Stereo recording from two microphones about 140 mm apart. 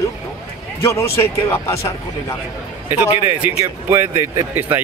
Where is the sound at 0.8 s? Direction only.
20° left (ahead or behind).